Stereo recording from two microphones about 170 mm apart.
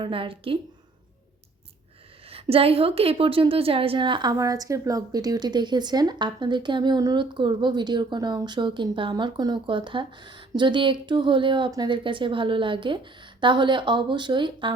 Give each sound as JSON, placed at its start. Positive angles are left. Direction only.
{"t": 0.0, "sound": "a woman's voice", "side_deg": -30}
{"t": 2.3, "sound": "a woman's voice", "side_deg": -35}